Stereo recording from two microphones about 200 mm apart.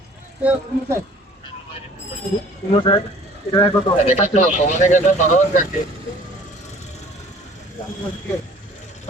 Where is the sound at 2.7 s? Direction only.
25° left (ahead or behind).